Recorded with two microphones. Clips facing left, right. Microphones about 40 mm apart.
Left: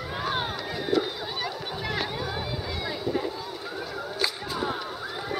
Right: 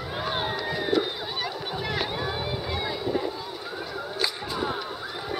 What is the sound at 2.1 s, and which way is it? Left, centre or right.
Boat, centre.